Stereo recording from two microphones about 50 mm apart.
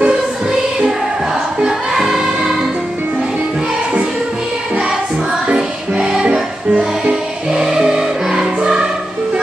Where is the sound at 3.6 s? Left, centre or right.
Centre.